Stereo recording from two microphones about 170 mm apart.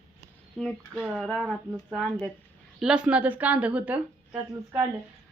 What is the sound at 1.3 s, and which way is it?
Speech, 5° left (ahead or behind).